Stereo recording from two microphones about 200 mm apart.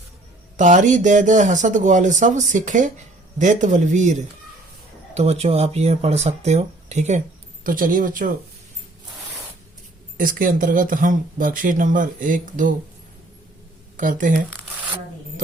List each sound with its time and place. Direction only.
0.5 s speech: 40° right (ahead or behind)
10.2 s speech: 45° right (ahead or behind)
13.9 s speech: 40° right (ahead or behind)